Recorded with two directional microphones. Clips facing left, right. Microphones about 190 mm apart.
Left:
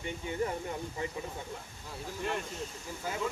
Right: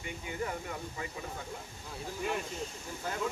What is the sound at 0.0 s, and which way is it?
Speech, 30° left (ahead or behind).